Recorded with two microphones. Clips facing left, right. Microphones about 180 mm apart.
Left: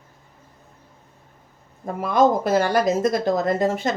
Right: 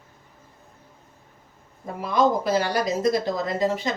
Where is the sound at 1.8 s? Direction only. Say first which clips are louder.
Left 3 dB; 50° left (ahead or behind).